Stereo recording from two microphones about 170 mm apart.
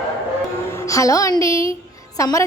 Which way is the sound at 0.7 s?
20° left (ahead or behind).